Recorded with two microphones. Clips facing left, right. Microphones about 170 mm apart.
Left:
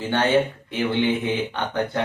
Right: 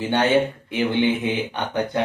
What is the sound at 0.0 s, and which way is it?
Speech, 15° right (ahead or behind).